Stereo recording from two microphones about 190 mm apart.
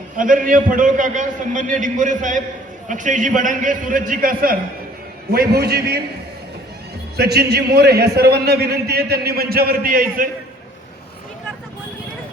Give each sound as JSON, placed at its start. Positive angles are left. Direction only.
{"t": 0.2, "sound": "a man's voice", "side_deg": -45}
{"t": 7.2, "sound": "a man's voice", "side_deg": -55}